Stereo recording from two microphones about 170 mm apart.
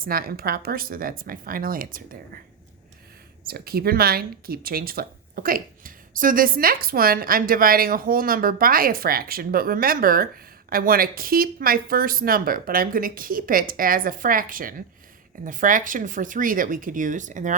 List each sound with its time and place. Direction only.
0.0 s speech: 60° right (ahead or behind)
3.4 s speech: 65° right (ahead or behind); by 17.5 s 45° right (ahead or behind)